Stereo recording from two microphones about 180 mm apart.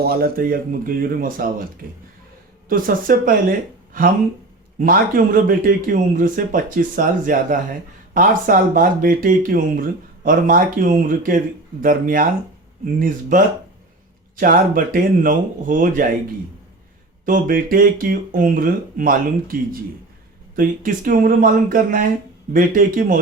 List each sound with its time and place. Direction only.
0.0 s speech: 55° right (ahead or behind)
2.6 s speech: 50° right (ahead or behind)
4.8 s speech: 50° right (ahead or behind)
17.2 s speech: 50° right (ahead or behind)